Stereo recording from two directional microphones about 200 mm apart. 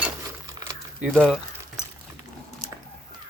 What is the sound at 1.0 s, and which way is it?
Speech, centre (ahead or behind).